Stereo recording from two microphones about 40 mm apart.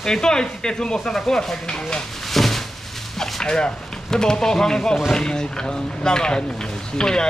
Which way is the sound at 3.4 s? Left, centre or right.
Centre.